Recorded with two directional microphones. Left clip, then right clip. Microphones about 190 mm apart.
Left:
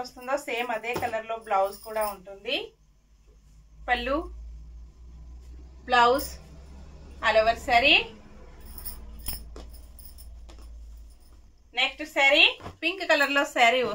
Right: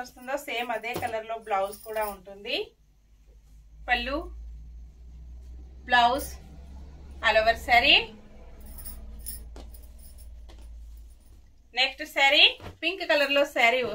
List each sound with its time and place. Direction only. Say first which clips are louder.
0.0 s speech: left 3 dB; 10° left (ahead or behind)
3.8 s speech: left 1 dB; 10° left (ahead or behind)
5.9 s speech: left 1 dB; 10° left (ahead or behind)
12.0 s a woman's voice: left 1 dB; centre (ahead or behind)
12.8 s a woman's voice: left 1 dB; 20° left (ahead or behind)